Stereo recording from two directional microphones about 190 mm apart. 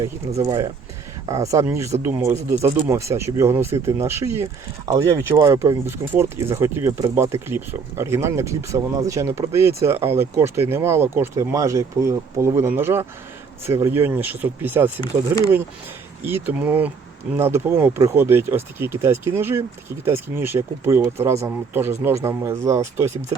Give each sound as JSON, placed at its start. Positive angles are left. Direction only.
{"t": 0.3, "sound": "speech", "side_deg": -15}
{"t": 16.2, "sound": "speech", "side_deg": -10}